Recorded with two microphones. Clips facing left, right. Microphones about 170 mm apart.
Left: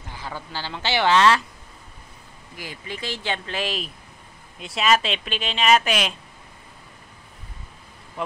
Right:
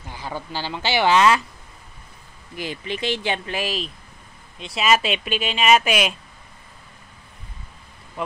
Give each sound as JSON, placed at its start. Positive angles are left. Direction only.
{"t": 0.2, "sound": "speech", "side_deg": -15}
{"t": 2.5, "sound": "speech", "side_deg": -25}